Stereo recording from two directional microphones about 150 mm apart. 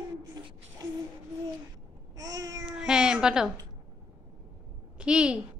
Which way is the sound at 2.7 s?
5° right (ahead or behind).